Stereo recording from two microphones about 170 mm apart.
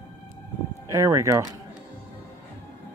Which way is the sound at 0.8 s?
20° right (ahead or behind).